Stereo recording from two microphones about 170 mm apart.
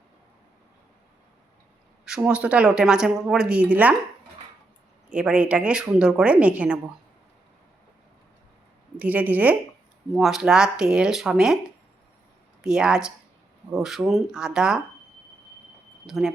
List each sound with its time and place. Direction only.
2.0 s speech: 5° right (ahead or behind)
5.0 s speech: 5° right (ahead or behind)
9.0 s speech: 10° right (ahead or behind)
12.6 s speech: 5° right (ahead or behind)
16.0 s speech: centre (ahead or behind)